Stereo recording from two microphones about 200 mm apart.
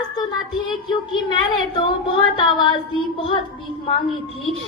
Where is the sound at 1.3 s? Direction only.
25° left (ahead or behind).